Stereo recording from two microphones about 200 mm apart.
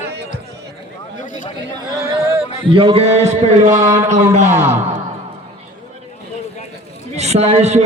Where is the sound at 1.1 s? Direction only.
40° left (ahead or behind).